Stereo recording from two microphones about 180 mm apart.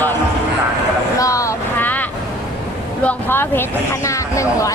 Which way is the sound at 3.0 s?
10° left (ahead or behind).